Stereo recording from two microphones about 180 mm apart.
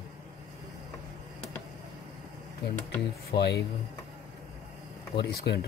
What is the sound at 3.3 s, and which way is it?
Speech, 65° left (ahead or behind).